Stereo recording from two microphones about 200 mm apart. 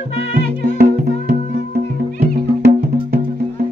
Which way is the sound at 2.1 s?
50° right (ahead or behind).